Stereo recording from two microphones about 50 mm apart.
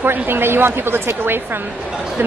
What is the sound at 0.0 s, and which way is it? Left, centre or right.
A woman's voice, right.